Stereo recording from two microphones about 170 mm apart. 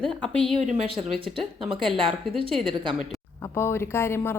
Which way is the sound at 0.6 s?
40° right (ahead or behind).